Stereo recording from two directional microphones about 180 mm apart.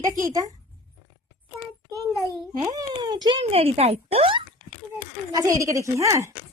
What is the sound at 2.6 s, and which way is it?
Speech, 20° right (ahead or behind).